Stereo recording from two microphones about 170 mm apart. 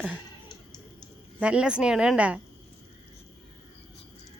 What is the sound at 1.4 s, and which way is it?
Speech, 5° right (ahead or behind).